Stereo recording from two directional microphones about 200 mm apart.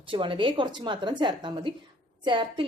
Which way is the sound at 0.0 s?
25° right (ahead or behind).